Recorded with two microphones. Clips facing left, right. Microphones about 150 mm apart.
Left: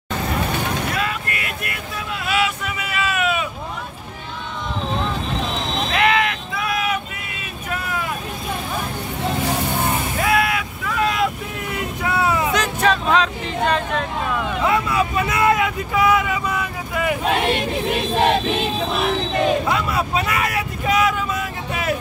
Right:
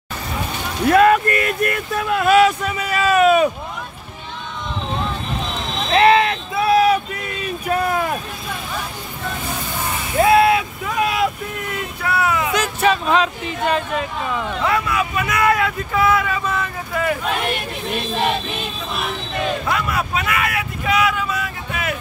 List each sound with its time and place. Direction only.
0.9 s vehicle: 55° right (ahead or behind)
5.9 s vehicle: 30° right (ahead or behind)
10.1 s vehicle: 30° right (ahead or behind)
11.0 s vehicle: 10° right (ahead or behind)
11.7 s vehicle: 20° left (ahead or behind)
12.5 s a sound: 5° right (ahead or behind)
14.7 s speech: 25° left (ahead or behind); by 17.2 s 10° left (ahead or behind)
19.4 s speech: 15° left (ahead or behind)
19.9 s vehicle: 30° left (ahead or behind)